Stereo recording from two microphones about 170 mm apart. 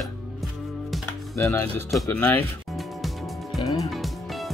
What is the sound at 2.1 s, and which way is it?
Speech, 10° left (ahead or behind).